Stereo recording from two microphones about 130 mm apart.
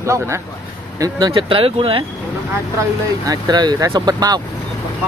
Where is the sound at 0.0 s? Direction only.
20° right (ahead or behind).